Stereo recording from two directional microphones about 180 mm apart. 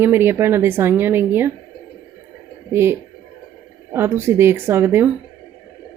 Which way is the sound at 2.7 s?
15° right (ahead or behind).